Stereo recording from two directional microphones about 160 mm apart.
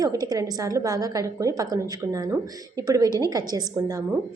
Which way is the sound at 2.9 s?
20° right (ahead or behind).